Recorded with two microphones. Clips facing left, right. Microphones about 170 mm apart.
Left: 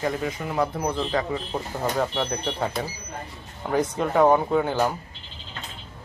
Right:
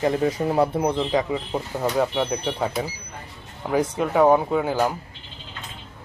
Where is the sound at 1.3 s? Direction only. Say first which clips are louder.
Right 2 dB; 10° right (ahead or behind).